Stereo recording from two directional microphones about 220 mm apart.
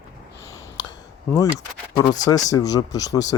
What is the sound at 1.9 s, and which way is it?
Speech, 15° left (ahead or behind).